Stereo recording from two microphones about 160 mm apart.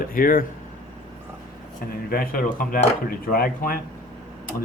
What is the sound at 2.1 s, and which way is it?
Speech, 65° left (ahead or behind).